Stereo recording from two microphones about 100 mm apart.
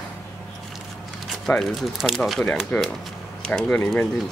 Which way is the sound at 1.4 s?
5° left (ahead or behind).